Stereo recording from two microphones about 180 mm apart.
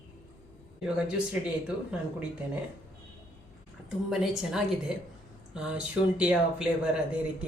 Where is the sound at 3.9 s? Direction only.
Centre (ahead or behind).